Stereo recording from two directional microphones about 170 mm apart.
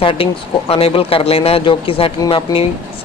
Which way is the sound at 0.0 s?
35° left (ahead or behind).